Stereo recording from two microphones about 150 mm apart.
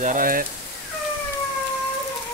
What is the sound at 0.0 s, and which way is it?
Speech, 65° right (ahead or behind).